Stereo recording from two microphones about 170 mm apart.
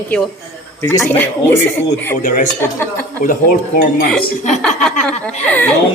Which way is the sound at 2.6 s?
15° left (ahead or behind).